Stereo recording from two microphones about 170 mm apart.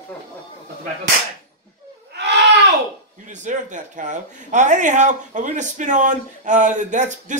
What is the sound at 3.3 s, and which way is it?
Speech, 45° right (ahead or behind).